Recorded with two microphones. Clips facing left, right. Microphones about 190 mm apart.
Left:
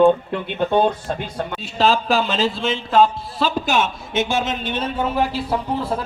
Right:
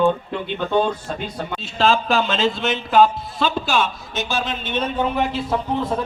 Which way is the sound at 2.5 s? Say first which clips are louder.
Even; 30° left (ahead or behind).